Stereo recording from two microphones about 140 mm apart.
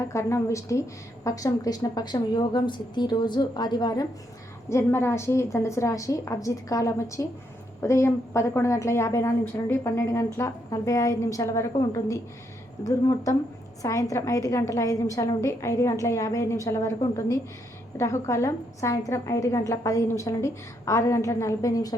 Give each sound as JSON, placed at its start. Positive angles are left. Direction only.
{"t": 0.1, "sound": "a woman's voice", "side_deg": 20}
{"t": 4.7, "sound": "a woman's voice", "side_deg": 20}